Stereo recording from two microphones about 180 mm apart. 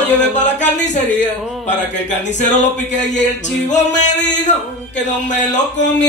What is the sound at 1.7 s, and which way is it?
Speech, 40° left (ahead or behind).